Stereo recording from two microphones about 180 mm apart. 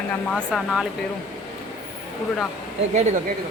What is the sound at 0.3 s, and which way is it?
Speech, 5° left (ahead or behind).